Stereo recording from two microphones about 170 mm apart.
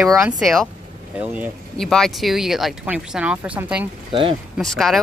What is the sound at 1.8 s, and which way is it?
Speech, 5° left (ahead or behind).